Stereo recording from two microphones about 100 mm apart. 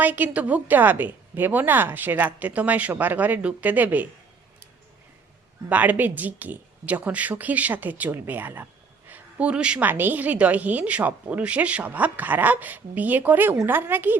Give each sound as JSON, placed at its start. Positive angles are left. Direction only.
{"t": 0.0, "sound": "a woman's voice", "side_deg": -15}
{"t": 5.6, "sound": "a woman's voice", "side_deg": -15}